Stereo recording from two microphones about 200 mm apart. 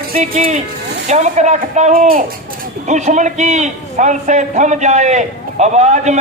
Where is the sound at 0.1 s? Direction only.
40° right (ahead or behind).